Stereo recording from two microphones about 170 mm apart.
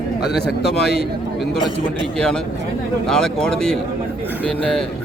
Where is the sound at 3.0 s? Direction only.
5° left (ahead or behind).